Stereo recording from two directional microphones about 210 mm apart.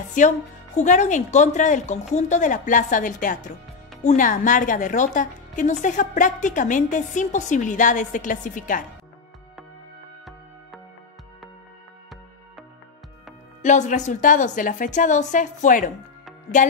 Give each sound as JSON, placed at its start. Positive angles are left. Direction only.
{"t": 0.2, "sound": "a woman's voice", "side_deg": 35}
{"t": 13.6, "sound": "a woman's voice", "side_deg": 35}